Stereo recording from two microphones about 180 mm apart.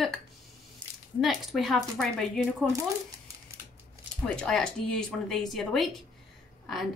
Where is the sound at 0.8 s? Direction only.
25° right (ahead or behind).